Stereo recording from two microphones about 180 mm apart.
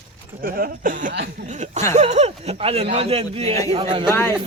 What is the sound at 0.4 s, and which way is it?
Speech, 55° right (ahead or behind).